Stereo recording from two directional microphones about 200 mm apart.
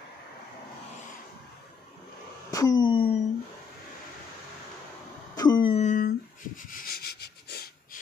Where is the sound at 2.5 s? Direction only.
20° left (ahead or behind).